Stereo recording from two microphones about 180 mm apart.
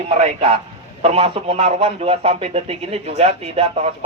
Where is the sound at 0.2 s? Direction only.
35° right (ahead or behind).